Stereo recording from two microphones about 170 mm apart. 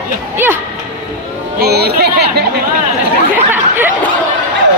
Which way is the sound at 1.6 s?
70° right (ahead or behind).